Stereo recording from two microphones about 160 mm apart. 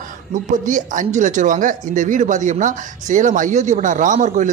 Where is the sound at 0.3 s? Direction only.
55° right (ahead or behind).